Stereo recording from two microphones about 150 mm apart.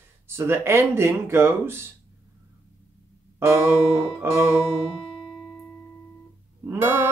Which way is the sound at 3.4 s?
15° right (ahead or behind).